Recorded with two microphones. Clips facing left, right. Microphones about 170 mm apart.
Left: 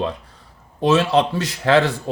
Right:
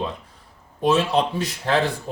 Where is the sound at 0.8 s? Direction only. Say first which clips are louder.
Left 3 dB; 80° left.